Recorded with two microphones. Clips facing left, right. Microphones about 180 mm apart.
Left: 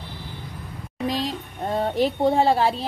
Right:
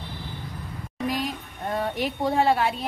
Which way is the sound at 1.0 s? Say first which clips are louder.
Left 2 dB; 25° left (ahead or behind).